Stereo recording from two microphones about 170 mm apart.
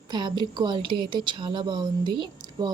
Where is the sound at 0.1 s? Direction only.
25° right (ahead or behind).